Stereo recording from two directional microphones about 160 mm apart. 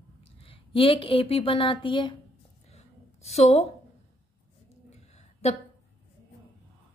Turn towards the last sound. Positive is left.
turn(degrees=40)  # may be behind; listen again after turning